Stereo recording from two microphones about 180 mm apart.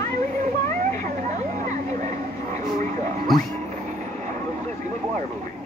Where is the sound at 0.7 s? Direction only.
40° right (ahead or behind).